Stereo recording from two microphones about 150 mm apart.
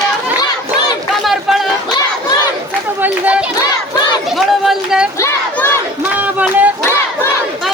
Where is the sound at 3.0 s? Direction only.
10° right (ahead or behind).